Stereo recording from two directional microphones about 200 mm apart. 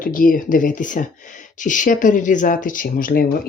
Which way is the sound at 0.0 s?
45° left (ahead or behind).